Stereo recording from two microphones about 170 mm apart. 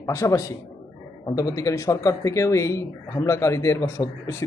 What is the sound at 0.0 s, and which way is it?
A man's voice, 15° left (ahead or behind).